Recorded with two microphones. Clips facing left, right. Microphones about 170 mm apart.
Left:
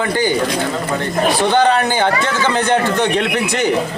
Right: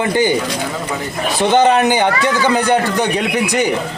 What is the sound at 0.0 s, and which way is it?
Speech, 20° right (ahead or behind).